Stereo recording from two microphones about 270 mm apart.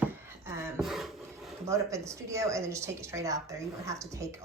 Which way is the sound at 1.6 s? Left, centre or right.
Centre.